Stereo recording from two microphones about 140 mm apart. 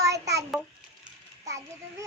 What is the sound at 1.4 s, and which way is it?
Speech, 20° right (ahead or behind).